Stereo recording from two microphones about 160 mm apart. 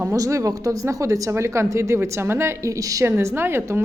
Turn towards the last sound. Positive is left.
turn(degrees=-15)  # may be behind; listen again after turning